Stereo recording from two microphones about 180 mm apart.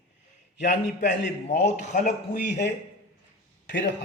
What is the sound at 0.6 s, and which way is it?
A man's voice, 45° left (ahead or behind).